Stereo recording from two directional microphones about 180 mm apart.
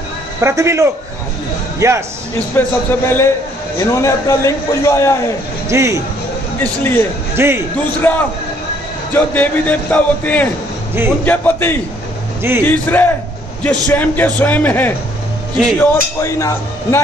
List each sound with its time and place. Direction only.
0.4 s a man's voice: 15° right (ahead or behind)
2.6 s a man's voice: 10° left (ahead or behind)
5.7 s a man's voice: 15° right (ahead or behind)
6.6 s a man's voice: 10° left (ahead or behind)
7.3 s a man's voice: 15° right (ahead or behind)
8.0 s a man's voice: 10° left (ahead or behind)